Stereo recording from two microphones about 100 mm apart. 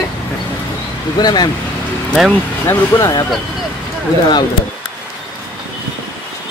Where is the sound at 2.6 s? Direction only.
25° left (ahead or behind).